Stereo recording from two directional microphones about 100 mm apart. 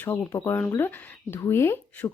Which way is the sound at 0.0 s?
20° left (ahead or behind).